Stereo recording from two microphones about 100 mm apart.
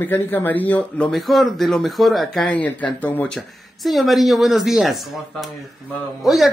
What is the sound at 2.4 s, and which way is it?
Speech, 15° left (ahead or behind).